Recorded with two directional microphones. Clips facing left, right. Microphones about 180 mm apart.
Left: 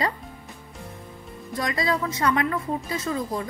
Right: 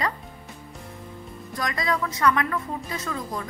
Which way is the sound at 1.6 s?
30° left (ahead or behind).